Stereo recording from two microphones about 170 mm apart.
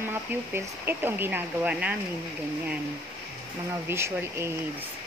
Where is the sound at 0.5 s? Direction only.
15° right (ahead or behind).